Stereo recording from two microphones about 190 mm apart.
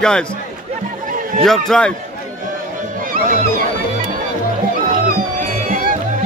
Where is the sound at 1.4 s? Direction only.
Centre (ahead or behind).